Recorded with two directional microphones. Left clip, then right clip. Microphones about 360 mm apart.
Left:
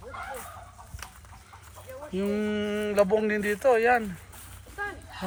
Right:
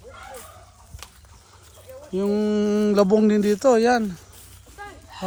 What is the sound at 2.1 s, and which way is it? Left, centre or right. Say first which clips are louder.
Speech: right 7 dB; centre.